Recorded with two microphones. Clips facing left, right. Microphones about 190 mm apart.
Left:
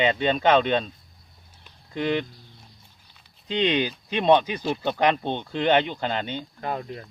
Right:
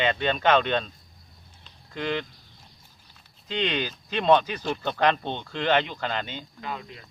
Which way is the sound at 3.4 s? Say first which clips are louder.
Left 5 dB; 15° left (ahead or behind).